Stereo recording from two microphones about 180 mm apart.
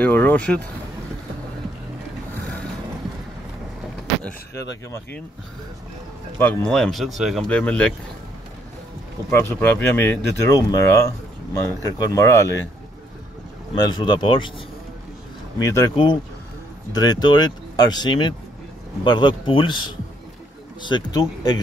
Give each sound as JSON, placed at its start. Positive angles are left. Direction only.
{"t": 0.0, "sound": "speech", "side_deg": 10}
{"t": 4.1, "sound": "vehicle", "side_deg": 5}
{"t": 6.3, "sound": "speech", "side_deg": 10}
{"t": 9.3, "sound": "speech", "side_deg": 10}
{"t": 13.7, "sound": "speech", "side_deg": 25}
{"t": 15.6, "sound": "speech", "side_deg": 20}
{"t": 20.8, "sound": "speech", "side_deg": 20}